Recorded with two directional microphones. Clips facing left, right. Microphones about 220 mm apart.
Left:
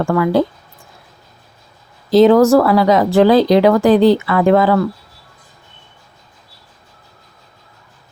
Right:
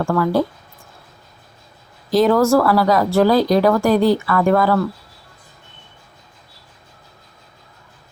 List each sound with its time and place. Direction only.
0.0 s speech: 15° left (ahead or behind)
2.0 s speech: 20° left (ahead or behind)